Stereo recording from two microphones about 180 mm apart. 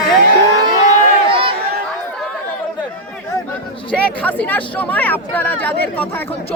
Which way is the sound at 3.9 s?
10° left (ahead or behind).